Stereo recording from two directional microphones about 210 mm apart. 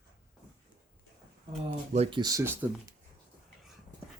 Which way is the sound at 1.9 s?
25° right (ahead or behind).